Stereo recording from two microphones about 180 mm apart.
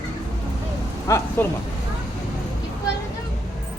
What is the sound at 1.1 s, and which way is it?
Speech, 15° left (ahead or behind).